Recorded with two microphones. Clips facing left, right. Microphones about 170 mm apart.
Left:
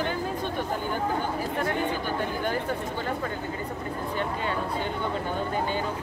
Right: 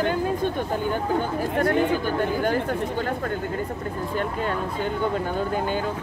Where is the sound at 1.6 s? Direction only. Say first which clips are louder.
Right 6 dB; 45° right (ahead or behind).